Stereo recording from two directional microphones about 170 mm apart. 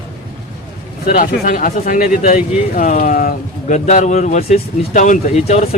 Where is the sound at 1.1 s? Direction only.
50° left (ahead or behind).